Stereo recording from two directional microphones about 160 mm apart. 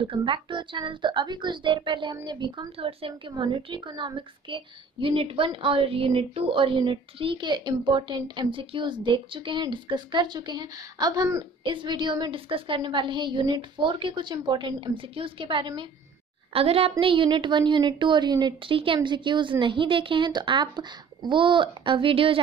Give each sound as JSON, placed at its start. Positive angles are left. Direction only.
{"t": 0.0, "sound": "a woman's voice", "side_deg": -30}